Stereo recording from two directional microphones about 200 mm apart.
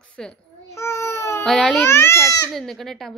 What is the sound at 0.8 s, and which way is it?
Baby cry, 15° left (ahead or behind).